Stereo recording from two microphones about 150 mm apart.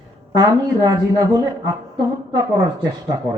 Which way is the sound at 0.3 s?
25° right (ahead or behind).